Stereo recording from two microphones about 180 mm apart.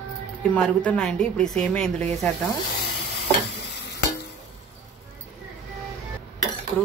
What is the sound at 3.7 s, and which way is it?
Sizzle, 70° left (ahead or behind).